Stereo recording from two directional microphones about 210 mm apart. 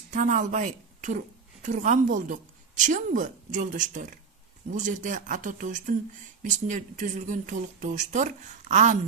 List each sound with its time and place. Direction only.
0.1 s a woman's voice: 35° right (ahead or behind)